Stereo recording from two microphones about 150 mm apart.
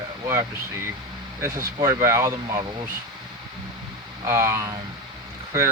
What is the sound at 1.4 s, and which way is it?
Speech, 15° right (ahead or behind).